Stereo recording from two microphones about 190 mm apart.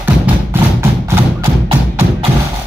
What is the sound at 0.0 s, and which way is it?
Music, 15° right (ahead or behind).